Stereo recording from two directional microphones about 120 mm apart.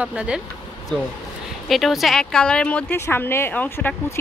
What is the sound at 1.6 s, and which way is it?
A woman's voice, centre (ahead or behind).